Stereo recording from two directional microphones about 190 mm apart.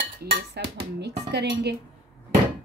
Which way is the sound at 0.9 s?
65° right (ahead or behind).